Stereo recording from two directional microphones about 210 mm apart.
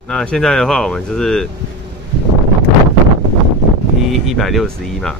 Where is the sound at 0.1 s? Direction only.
5° left (ahead or behind).